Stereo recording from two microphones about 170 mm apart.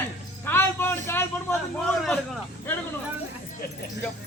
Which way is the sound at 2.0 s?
5° left (ahead or behind).